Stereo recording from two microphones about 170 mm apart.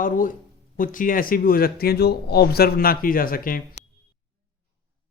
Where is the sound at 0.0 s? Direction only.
50° left (ahead or behind).